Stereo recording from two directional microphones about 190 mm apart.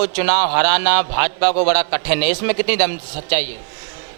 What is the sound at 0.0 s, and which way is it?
A man's voice, 15° right (ahead or behind).